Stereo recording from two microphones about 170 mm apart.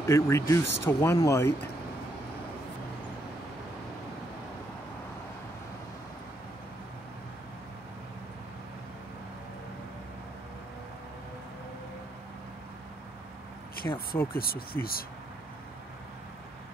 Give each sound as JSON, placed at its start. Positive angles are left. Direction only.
{"t": 0.0, "sound": "speech", "side_deg": 15}
{"t": 13.9, "sound": "speech", "side_deg": 60}